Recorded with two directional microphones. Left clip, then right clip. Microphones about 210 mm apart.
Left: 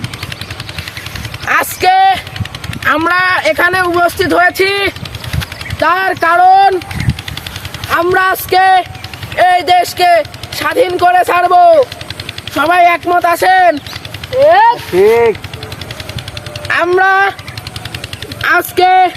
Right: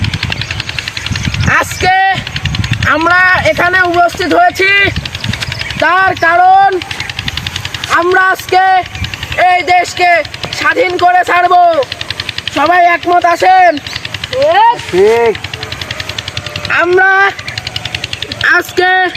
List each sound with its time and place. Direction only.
1.5 s a sound: 15° left (ahead or behind)
2.9 s speech: 15° left (ahead or behind)
7.9 s a man's voice: 15° left (ahead or behind)
14.3 s speech: centre (ahead or behind)
14.9 s speech: 25° left (ahead or behind)
16.7 s speech: 15° left (ahead or behind)
18.4 s speech: 20° left (ahead or behind)